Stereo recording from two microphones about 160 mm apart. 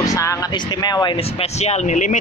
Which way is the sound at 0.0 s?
20° left (ahead or behind).